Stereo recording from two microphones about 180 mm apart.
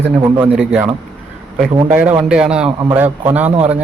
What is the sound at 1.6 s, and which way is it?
A man's voice, 5° right (ahead or behind).